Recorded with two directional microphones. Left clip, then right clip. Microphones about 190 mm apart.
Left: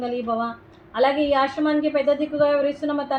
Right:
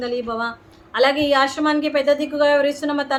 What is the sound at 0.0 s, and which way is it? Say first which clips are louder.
A woman's voice: right 1 dB; 10° right (ahead or behind).